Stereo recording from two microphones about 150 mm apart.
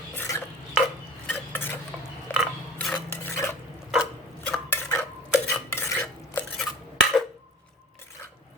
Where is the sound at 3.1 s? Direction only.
20° left (ahead or behind).